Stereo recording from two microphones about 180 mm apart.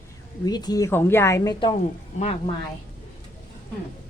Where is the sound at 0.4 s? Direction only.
20° left (ahead or behind).